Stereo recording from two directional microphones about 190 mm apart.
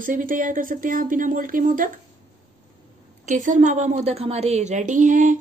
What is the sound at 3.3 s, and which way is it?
A woman's voice, 40° right (ahead or behind).